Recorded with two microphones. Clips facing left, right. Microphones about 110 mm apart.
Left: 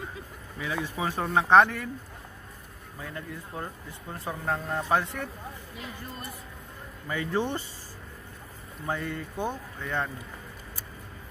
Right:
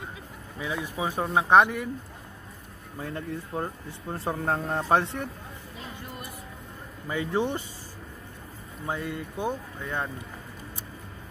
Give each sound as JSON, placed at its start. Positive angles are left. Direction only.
{"t": 0.6, "sound": "speech", "side_deg": -15}
{"t": 3.0, "sound": "speech", "side_deg": -35}
{"t": 7.1, "sound": "speech", "side_deg": -15}
{"t": 8.8, "sound": "speech", "side_deg": -10}